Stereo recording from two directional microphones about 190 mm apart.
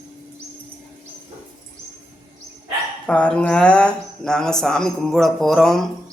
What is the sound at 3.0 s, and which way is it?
Speech, 5° left (ahead or behind).